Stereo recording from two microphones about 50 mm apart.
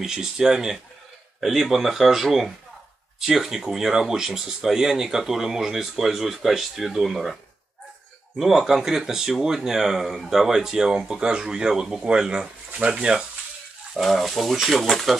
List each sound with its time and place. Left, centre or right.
0.0 s speech: centre
8.4 s speech: centre
13.9 s speech: centre